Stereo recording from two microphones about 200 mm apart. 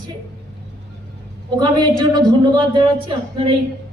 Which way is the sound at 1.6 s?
20° right (ahead or behind).